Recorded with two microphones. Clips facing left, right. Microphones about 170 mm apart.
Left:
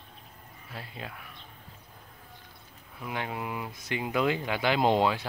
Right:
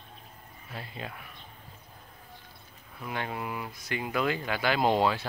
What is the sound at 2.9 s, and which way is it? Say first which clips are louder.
Speech: even; 10° left (ahead or behind).